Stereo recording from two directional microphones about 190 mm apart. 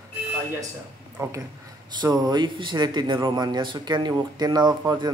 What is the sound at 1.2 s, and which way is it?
A man's voice, 15° right (ahead or behind).